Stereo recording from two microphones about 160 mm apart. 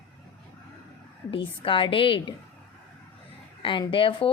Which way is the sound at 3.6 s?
30° left (ahead or behind).